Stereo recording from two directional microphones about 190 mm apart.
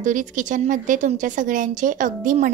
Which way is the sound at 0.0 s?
40° right (ahead or behind).